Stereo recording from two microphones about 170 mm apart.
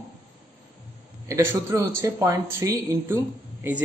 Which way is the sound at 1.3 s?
15° right (ahead or behind).